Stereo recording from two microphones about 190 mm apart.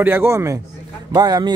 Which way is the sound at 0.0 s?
10° right (ahead or behind).